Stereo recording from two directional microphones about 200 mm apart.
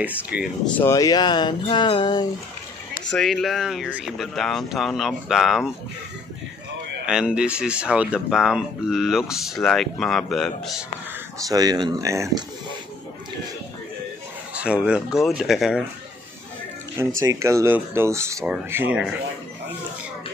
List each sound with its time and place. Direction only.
0.0 s speech: 5° right (ahead or behind)
0.7 s speech: 15° left (ahead or behind)
3.1 s speech: centre (ahead or behind)
7.1 s speech: 5° right (ahead or behind)
11.4 s speech: 20° right (ahead or behind)
14.5 s speech: 5° right (ahead or behind)
17.2 s speech: 15° right (ahead or behind)